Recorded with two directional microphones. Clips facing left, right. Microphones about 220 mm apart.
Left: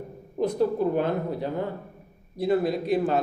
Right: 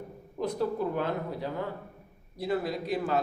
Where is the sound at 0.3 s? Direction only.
20° left (ahead or behind).